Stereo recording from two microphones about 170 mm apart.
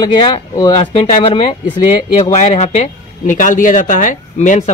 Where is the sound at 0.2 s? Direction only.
25° left (ahead or behind).